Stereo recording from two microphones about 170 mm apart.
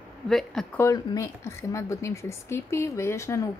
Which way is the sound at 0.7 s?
20° left (ahead or behind).